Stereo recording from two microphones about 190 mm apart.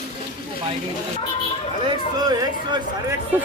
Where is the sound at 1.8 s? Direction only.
25° right (ahead or behind).